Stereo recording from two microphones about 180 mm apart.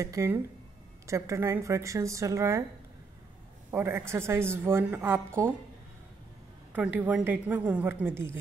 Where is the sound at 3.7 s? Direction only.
15° right (ahead or behind).